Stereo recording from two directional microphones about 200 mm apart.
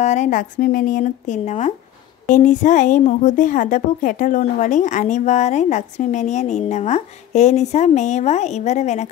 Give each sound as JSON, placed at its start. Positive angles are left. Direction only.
{"t": 0.0, "sound": "a woman's voice", "side_deg": 35}